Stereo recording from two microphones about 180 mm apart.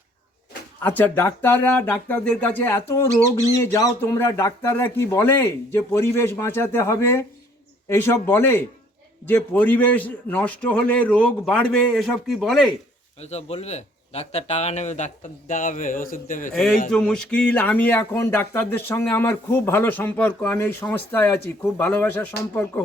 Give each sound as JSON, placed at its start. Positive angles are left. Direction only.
{"t": 0.8, "sound": "speech", "side_deg": 10}
{"t": 13.1, "sound": "speech", "side_deg": 35}
{"t": 16.9, "sound": "speech", "side_deg": 5}